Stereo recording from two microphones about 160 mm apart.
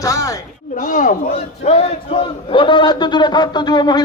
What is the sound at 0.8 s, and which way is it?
Speech, 55° left (ahead or behind).